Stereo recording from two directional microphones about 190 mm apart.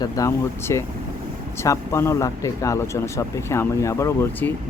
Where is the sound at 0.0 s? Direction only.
15° left (ahead or behind).